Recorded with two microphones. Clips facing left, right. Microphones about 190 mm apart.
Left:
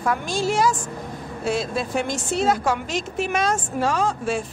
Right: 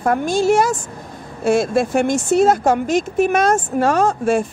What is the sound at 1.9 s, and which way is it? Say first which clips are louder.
Speech: right 8 dB; 50° right (ahead or behind).